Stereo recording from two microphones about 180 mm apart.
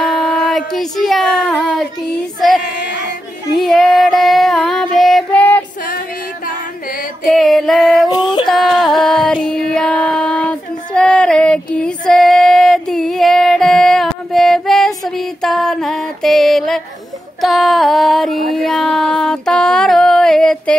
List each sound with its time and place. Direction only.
0.0 s speech: centre (ahead or behind)
2.6 s female singing: 75° left (ahead or behind)
3.5 s female singing: centre (ahead or behind)
7.2 s music: centre (ahead or behind)